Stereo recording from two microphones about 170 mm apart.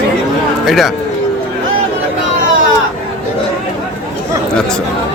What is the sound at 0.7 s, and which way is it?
Speech, centre (ahead or behind).